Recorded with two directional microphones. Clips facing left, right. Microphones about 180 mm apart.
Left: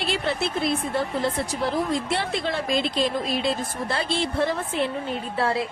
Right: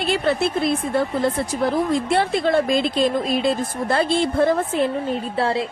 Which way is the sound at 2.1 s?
50° right (ahead or behind).